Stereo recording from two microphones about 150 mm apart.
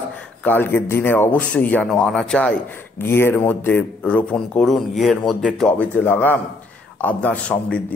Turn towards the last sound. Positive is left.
turn(degrees=10)  # may be behind; listen again after turning